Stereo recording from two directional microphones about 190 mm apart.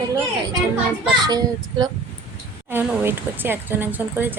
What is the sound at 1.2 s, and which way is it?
Speech, 20° right (ahead or behind).